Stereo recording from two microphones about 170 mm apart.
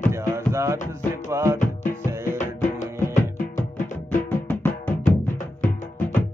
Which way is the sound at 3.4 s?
45° left (ahead or behind).